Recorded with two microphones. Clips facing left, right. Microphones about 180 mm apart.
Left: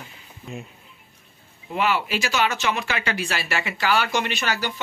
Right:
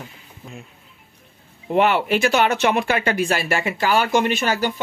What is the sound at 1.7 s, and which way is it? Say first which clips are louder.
Speech: right 6 dB; 60° right (ahead or behind).